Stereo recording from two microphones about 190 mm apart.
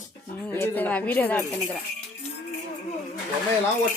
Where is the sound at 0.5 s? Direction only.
10° left (ahead or behind).